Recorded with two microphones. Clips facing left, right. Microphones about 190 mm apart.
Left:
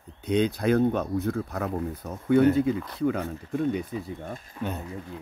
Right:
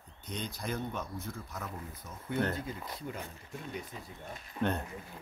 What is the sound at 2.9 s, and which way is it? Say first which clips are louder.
Speech: left 15 dB; 75° left (ahead or behind).